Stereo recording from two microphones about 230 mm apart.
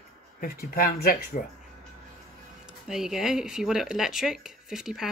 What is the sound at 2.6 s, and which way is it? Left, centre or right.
Speech, centre.